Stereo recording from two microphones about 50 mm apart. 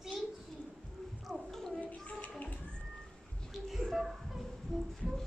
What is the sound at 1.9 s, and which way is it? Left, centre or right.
Bathtub, left.